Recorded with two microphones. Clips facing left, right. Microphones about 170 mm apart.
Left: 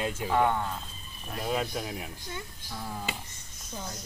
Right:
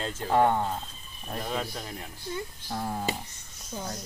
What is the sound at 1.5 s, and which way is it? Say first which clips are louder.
Speech: left 5 dB; 10° left (ahead or behind).